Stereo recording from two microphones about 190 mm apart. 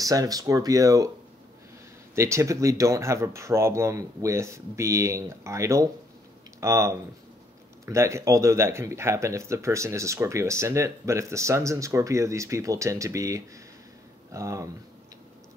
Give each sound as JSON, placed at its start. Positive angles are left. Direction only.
{"t": 0.0, "sound": "speech", "side_deg": -20}
{"t": 2.1, "sound": "speech", "side_deg": -15}